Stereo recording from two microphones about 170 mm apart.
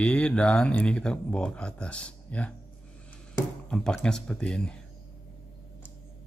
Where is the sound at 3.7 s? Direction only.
5° left (ahead or behind).